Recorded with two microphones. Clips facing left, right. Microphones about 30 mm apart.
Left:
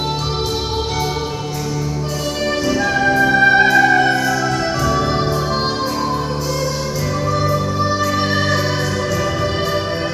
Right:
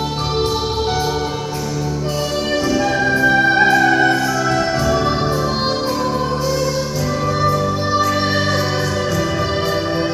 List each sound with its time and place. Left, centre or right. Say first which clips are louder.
2.7 s music: left 1 dB; centre
7.4 s music: right 1 dB; centre